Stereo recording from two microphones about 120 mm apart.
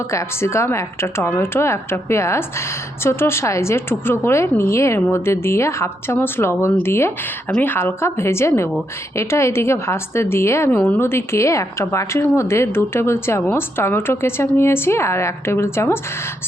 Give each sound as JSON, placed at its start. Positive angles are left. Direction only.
{"t": 0.1, "sound": "a woman's voice", "side_deg": 25}